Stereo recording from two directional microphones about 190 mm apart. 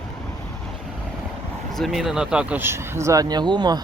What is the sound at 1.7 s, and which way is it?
Speech, centre (ahead or behind).